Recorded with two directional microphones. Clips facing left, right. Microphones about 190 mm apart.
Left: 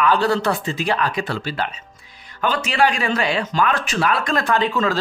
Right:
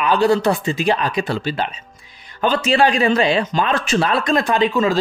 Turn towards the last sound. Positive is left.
turn(degrees=-15)  # may be behind; listen again after turning